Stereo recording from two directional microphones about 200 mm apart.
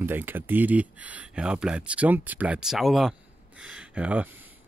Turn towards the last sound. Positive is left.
turn(degrees=-5)  # may be behind; listen again after turning